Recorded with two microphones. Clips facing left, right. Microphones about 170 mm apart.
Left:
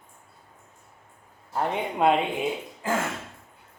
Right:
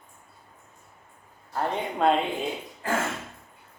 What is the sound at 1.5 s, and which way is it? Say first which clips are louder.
Speech: left 1 dB; 15° left (ahead or behind).